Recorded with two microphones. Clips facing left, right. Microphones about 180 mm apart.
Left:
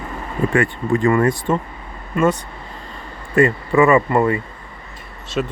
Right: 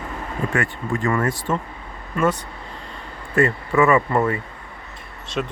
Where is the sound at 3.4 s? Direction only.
15° left (ahead or behind).